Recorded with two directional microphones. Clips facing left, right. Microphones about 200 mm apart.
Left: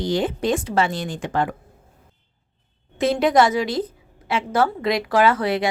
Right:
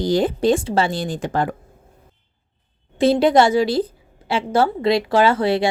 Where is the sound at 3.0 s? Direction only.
30° right (ahead or behind).